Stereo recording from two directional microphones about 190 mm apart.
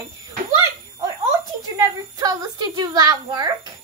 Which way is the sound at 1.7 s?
20° right (ahead or behind).